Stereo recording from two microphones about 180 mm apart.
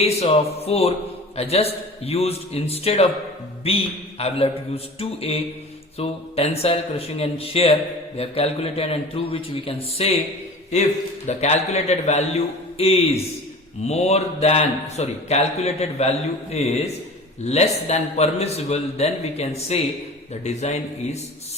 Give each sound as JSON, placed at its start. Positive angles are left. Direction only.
{"t": 0.0, "sound": "a man's voice", "side_deg": 35}
{"t": 11.3, "sound": "a man's voice", "side_deg": 40}